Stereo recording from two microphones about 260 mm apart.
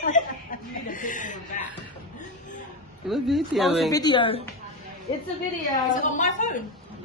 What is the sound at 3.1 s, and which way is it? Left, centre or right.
Speech, centre.